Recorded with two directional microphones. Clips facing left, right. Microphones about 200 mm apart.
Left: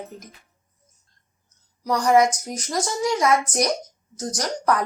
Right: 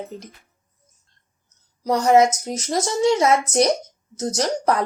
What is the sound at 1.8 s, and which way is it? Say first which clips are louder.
Speech: right 2 dB; 25° right (ahead or behind).